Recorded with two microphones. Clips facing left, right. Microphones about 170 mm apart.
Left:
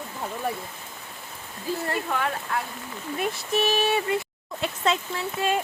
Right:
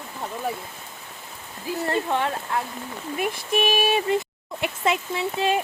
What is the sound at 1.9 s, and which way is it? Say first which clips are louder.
Speech: right 6 dB; 25° right (ahead or behind).